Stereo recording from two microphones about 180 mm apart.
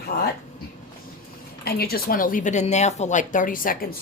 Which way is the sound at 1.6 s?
60° left (ahead or behind).